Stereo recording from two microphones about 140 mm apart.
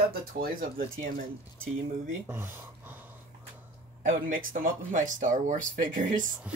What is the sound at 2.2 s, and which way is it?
Speech, 15° right (ahead or behind).